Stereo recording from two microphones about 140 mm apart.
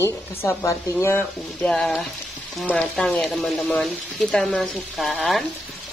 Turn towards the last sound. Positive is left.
turn(degrees=0)  # may be behind; listen again after turning